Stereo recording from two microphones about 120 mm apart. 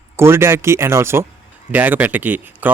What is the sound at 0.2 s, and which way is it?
Speech, 20° right (ahead or behind).